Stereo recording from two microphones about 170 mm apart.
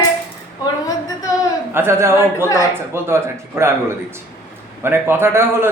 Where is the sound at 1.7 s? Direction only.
15° right (ahead or behind).